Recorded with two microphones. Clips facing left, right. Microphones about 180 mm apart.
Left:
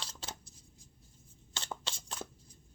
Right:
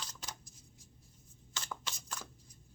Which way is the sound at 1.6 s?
30° left (ahead or behind).